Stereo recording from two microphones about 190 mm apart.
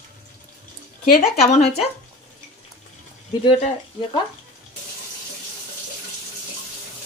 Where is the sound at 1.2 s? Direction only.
35° left (ahead or behind).